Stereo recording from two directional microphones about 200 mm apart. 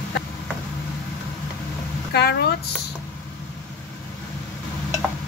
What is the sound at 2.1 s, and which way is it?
Speech, 55° left (ahead or behind).